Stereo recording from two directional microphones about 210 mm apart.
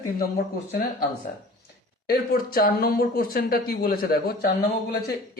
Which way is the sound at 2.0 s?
45° left (ahead or behind).